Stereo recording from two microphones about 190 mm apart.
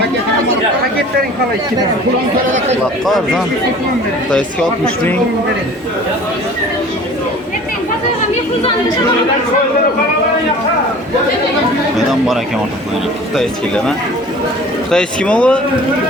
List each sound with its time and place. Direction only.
13.3 s speech: 5° left (ahead or behind)